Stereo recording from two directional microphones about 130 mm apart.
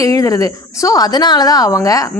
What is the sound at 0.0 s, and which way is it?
A woman's voice, 25° left (ahead or behind).